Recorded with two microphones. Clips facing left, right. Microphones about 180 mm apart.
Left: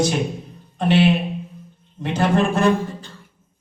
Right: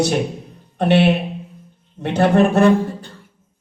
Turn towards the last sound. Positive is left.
turn(degrees=-65)  # may be behind; listen again after turning